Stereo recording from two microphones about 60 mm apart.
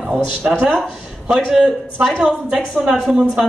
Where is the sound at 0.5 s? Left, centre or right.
Centre.